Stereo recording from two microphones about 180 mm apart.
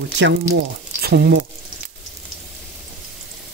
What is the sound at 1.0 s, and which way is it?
Speech, 65° right (ahead or behind).